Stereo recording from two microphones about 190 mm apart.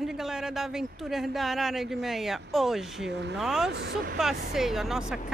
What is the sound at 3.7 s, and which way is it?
Speech, 55° right (ahead or behind).